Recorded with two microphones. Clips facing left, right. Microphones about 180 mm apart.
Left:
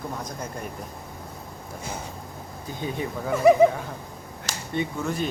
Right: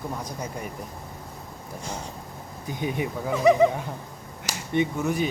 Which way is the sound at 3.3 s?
5° left (ahead or behind).